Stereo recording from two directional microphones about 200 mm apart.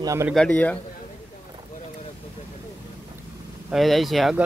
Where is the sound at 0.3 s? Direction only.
5° left (ahead or behind).